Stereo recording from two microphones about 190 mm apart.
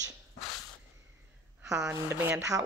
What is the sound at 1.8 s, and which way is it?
Speech, 15° right (ahead or behind).